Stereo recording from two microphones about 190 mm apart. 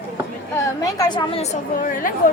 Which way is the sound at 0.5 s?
20° left (ahead or behind).